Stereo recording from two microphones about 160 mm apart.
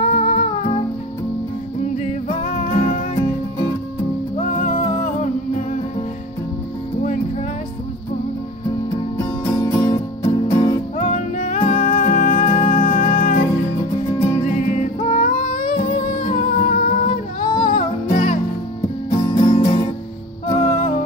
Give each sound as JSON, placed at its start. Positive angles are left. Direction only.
{"t": 0.0, "sound": "music", "side_deg": 50}
{"t": 2.6, "sound": "music", "side_deg": 50}
{"t": 4.4, "sound": "music", "side_deg": 50}
{"t": 9.2, "sound": "music", "side_deg": 20}
{"t": 9.8, "sound": "music", "side_deg": 35}
{"t": 11.0, "sound": "music", "side_deg": 45}
{"t": 14.1, "sound": "music", "side_deg": 40}
{"t": 17.7, "sound": "music", "side_deg": 55}
{"t": 19.0, "sound": "music", "side_deg": 45}